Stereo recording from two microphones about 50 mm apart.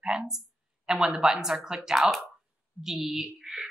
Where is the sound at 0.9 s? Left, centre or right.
Centre.